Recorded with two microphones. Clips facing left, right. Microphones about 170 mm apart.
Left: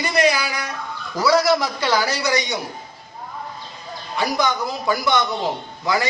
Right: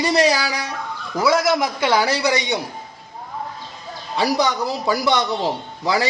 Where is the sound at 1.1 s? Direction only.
20° right (ahead or behind).